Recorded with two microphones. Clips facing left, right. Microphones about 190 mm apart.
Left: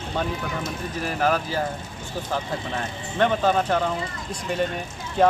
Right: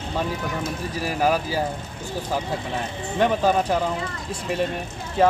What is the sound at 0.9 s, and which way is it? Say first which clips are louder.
Speech: right 1 dB; 10° right (ahead or behind).